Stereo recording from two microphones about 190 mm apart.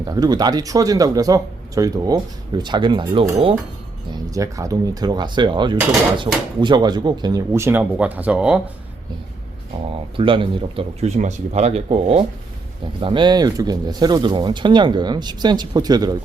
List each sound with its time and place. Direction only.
0.0 s speech: 20° right (ahead or behind)
10.2 s speech: 25° right (ahead or behind)